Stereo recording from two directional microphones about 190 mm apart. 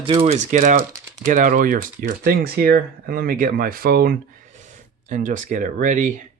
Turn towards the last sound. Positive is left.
turn(degrees=-40)  # may be behind; listen again after turning